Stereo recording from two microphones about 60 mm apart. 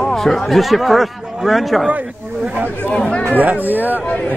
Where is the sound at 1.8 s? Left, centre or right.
Right.